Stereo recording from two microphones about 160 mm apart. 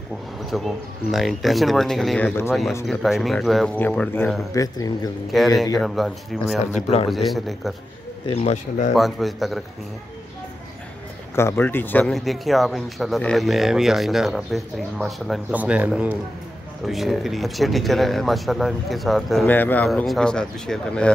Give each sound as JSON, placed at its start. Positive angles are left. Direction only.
{"t": 0.5, "sound": "speech", "side_deg": 0}
{"t": 2.9, "sound": "speech", "side_deg": 0}
{"t": 4.6, "sound": "speech", "side_deg": 20}
{"t": 5.3, "sound": "speech", "side_deg": 0}
{"t": 6.6, "sound": "speech", "side_deg": 40}
{"t": 7.1, "sound": "speech", "side_deg": 0}
{"t": 8.3, "sound": "a man's voice", "side_deg": 45}
{"t": 8.9, "sound": "speech", "side_deg": 0}
{"t": 11.3, "sound": "speech", "side_deg": 15}
{"t": 12.1, "sound": "speech", "side_deg": 0}
{"t": 19.5, "sound": "speech", "side_deg": 10}